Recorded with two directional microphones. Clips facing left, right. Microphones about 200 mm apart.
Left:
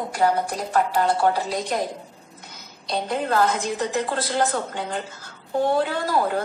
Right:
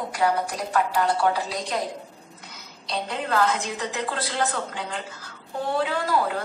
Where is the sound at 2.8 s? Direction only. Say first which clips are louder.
Left 4 dB; 45° left (ahead or behind).